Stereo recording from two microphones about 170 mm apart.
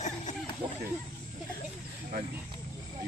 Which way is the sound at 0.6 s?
25° right (ahead or behind).